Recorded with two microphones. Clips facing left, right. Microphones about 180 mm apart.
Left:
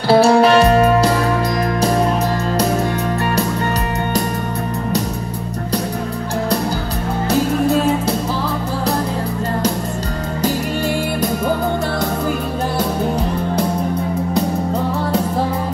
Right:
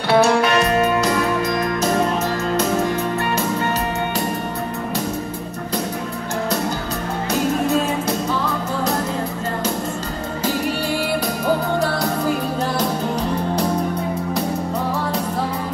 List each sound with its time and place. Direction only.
0.1 s music: 30° left (ahead or behind)